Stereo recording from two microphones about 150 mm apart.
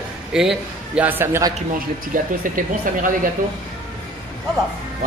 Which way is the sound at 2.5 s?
65° right (ahead or behind).